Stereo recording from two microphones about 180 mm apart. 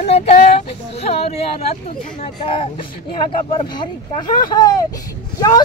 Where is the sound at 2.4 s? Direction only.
30° left (ahead or behind).